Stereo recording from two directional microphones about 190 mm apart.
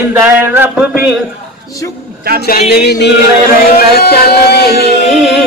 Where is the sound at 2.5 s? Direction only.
60° left (ahead or behind).